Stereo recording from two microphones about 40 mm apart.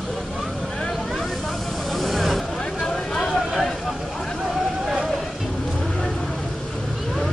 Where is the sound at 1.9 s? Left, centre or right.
Centre.